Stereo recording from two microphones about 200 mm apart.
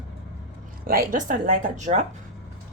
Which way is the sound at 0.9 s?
45° right (ahead or behind).